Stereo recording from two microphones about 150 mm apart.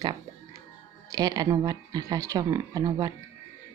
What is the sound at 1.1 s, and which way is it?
Speech, 25° right (ahead or behind).